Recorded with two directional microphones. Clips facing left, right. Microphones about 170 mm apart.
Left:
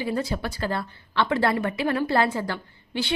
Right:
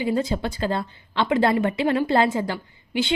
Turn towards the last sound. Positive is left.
turn(degrees=-20)  # may be behind; listen again after turning